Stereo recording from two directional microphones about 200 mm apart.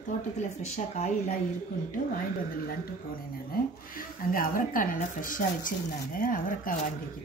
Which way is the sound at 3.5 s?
45° left (ahead or behind).